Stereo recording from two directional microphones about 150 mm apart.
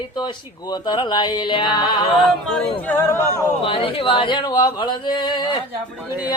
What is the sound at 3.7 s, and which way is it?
Speech, 35° left (ahead or behind).